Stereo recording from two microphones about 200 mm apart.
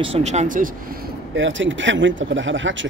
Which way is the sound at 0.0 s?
30° right (ahead or behind).